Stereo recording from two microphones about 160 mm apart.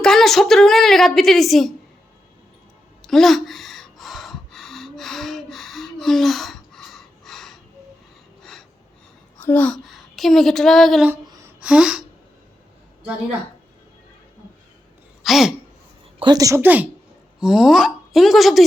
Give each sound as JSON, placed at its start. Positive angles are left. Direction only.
{"t": 0.0, "sound": "a woman's voice", "side_deg": 0}
{"t": 3.0, "sound": "gasp", "side_deg": 0}
{"t": 9.4, "sound": "a woman's voice", "side_deg": 10}
{"t": 11.4, "sound": "gasp", "side_deg": -5}
{"t": 15.2, "sound": "speech", "side_deg": 0}
{"t": 16.1, "sound": "a woman's voice", "side_deg": -25}